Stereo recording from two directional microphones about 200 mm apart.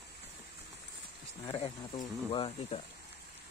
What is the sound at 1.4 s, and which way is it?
Speech, 25° left (ahead or behind).